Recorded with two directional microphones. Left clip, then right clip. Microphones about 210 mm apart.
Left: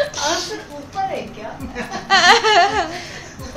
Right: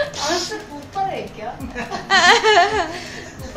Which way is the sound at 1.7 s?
5° right (ahead or behind).